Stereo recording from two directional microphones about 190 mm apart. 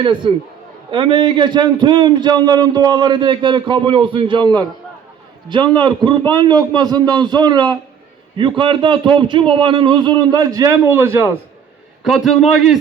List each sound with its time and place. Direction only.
0.0 s a man's voice: 25° right (ahead or behind)
12.0 s a man's voice: centre (ahead or behind)